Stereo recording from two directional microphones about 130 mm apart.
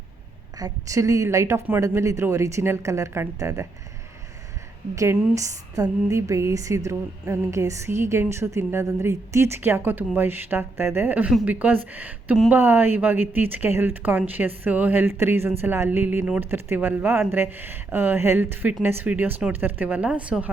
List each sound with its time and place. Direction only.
0.6 s a woman's voice: 25° right (ahead or behind)
4.9 s a woman's voice: 25° right (ahead or behind)